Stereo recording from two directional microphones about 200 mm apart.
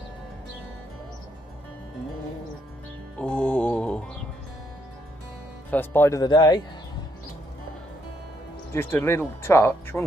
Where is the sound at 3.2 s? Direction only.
5° left (ahead or behind).